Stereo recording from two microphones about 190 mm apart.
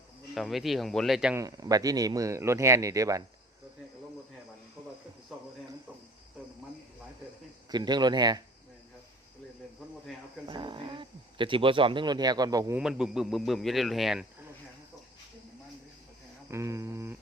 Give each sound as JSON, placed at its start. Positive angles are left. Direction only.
{"t": 0.3, "sound": "speech", "side_deg": 0}
{"t": 1.4, "sound": "speech", "side_deg": -20}
{"t": 7.7, "sound": "speech", "side_deg": -20}
{"t": 10.4, "sound": "speech", "side_deg": -25}
{"t": 12.8, "sound": "speech", "side_deg": -5}
{"t": 16.5, "sound": "speech", "side_deg": -15}